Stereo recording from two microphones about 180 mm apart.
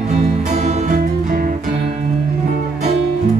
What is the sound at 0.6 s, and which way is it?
Music, 40° right (ahead or behind).